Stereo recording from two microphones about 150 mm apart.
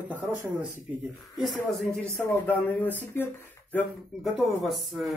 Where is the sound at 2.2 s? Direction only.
15° left (ahead or behind).